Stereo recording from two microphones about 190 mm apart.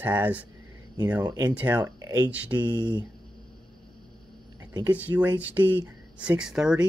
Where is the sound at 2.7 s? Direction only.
20° right (ahead or behind).